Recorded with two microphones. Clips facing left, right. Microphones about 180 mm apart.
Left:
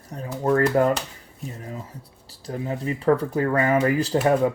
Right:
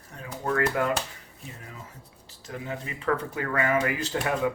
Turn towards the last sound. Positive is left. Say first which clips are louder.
# left 7 dB
turn(degrees=35)  # may be behind; listen again after turning